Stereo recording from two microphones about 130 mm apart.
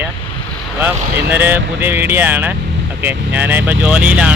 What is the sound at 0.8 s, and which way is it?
Speech, 15° right (ahead or behind).